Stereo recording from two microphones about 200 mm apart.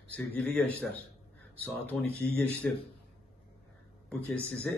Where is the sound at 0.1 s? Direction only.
5° left (ahead or behind).